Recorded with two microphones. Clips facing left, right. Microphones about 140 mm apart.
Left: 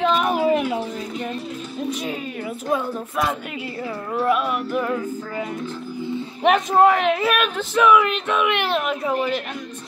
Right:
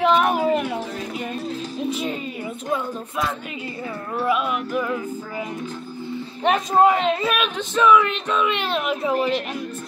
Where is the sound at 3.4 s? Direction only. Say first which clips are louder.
Left 2 dB; 5° left (ahead or behind).